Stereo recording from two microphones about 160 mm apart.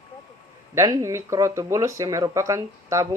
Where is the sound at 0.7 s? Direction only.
20° right (ahead or behind).